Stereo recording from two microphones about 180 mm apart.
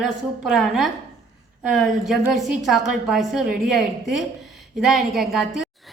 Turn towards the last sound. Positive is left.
turn(degrees=0)  # may be behind; listen again after turning